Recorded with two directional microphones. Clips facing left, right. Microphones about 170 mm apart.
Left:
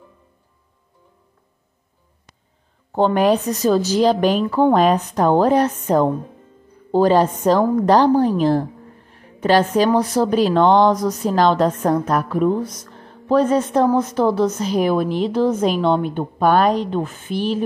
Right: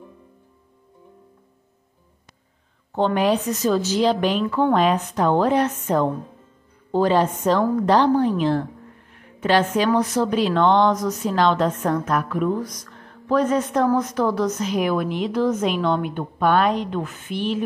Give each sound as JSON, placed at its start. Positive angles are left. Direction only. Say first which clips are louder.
{"t": 3.2, "sound": "a woman's voice", "louder": "left 3 dB", "side_deg": 40}